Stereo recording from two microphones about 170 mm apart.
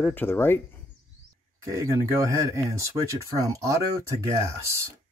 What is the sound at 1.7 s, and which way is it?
Speech, 20° right (ahead or behind).